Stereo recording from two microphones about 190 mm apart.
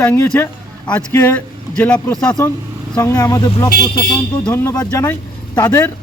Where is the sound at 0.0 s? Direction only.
10° left (ahead or behind).